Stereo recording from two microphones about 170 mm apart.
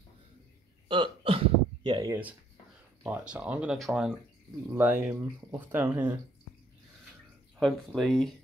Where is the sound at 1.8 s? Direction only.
25° right (ahead or behind).